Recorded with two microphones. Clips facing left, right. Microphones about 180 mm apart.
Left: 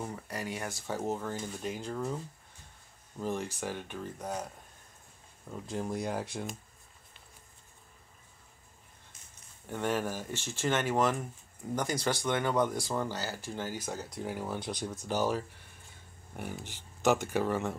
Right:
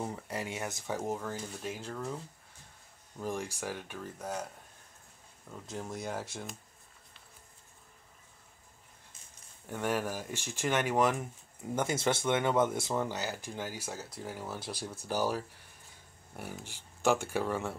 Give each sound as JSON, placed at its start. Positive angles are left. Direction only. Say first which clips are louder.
{"t": 0.3, "sound": "speech", "louder": "even", "side_deg": -25}
{"t": 0.9, "sound": "speech", "louder": "left 2 dB", "side_deg": -5}
{"t": 1.9, "sound": "speech", "louder": "left 5 dB", "side_deg": 10}
{"t": 3.2, "sound": "speech", "louder": "left 2 dB", "side_deg": -10}
{"t": 5.7, "sound": "speech", "louder": "left 4 dB", "side_deg": 0}
{"t": 9.7, "sound": "speech", "louder": "left 1 dB", "side_deg": -10}
{"t": 17.4, "sound": "speech", "louder": "left 2 dB", "side_deg": 5}